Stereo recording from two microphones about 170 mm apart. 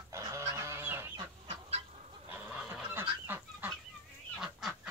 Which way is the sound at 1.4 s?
35° right (ahead or behind).